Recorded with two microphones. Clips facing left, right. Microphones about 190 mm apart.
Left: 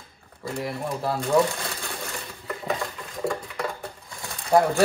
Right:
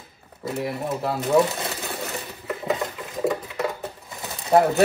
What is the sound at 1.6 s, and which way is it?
Coin, 20° right (ahead or behind).